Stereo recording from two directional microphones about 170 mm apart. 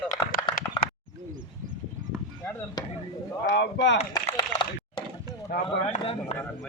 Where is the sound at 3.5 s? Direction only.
90° left.